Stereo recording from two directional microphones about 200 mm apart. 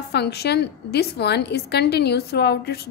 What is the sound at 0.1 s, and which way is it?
A woman's voice, 55° left (ahead or behind).